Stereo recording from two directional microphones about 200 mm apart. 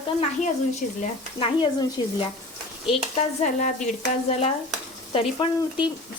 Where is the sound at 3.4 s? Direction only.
40° left (ahead or behind).